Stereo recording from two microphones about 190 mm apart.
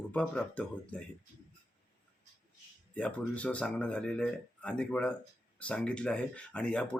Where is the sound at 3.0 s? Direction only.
5° left (ahead or behind).